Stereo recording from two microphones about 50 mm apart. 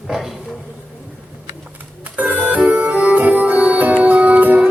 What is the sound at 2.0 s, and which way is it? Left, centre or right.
Music, right.